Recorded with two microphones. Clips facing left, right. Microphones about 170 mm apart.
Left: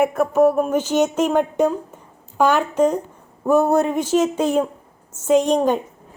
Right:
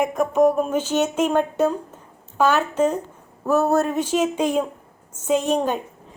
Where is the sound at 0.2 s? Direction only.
5° left (ahead or behind).